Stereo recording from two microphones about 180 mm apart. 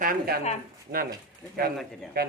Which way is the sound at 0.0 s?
50° right (ahead or behind).